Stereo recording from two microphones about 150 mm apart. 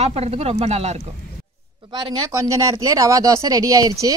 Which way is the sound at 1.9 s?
30° right (ahead or behind).